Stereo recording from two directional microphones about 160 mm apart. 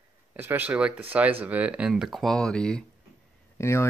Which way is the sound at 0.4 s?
10° right (ahead or behind).